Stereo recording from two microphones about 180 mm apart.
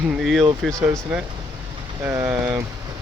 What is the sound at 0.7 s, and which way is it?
Speech, 20° right (ahead or behind).